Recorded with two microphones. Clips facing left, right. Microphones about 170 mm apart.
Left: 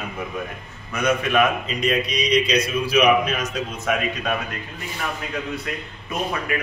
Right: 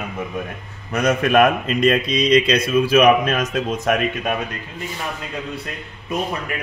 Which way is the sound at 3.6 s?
90° right.